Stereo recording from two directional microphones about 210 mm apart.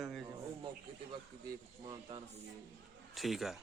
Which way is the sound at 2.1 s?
30° right (ahead or behind).